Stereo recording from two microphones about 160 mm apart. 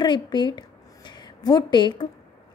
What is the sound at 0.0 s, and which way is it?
A woman's voice, 30° left (ahead or behind).